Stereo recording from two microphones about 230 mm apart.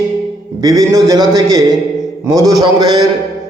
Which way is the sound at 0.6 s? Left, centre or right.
Centre.